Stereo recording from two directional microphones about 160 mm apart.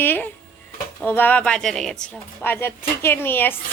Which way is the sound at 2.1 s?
10° left (ahead or behind).